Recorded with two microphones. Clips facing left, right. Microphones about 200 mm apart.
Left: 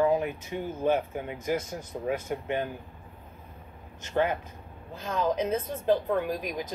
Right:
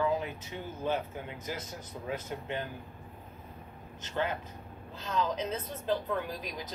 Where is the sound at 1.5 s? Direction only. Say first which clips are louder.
Left 12 dB; 50° left (ahead or behind).